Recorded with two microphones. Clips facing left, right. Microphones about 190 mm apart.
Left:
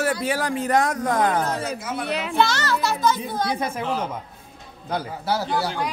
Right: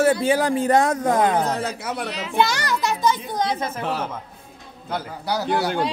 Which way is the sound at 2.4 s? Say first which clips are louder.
Right 1 dB; 15° right (ahead or behind).